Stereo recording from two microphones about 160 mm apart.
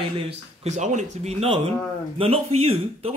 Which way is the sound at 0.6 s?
45° right (ahead or behind).